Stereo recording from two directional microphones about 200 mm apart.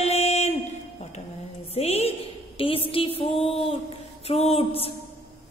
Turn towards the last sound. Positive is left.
turn(degrees=30)  # may be behind; listen again after turning